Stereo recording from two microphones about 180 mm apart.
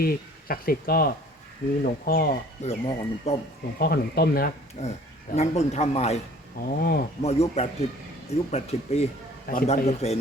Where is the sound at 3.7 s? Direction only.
60° left (ahead or behind).